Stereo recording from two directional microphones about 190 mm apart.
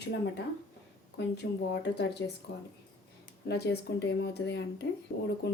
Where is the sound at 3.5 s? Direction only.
60° left (ahead or behind).